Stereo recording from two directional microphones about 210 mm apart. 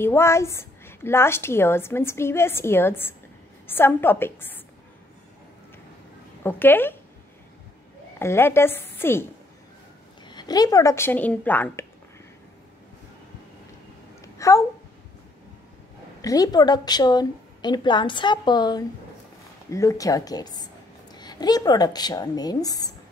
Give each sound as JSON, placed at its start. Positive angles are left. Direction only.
{"t": 0.0, "sound": "a woman's voice", "side_deg": 10}
{"t": 6.4, "sound": "a woman's voice", "side_deg": 10}
{"t": 8.2, "sound": "a woman's voice", "side_deg": 10}
{"t": 14.2, "sound": "a sound", "side_deg": 15}
{"t": 16.2, "sound": "a woman's voice", "side_deg": 15}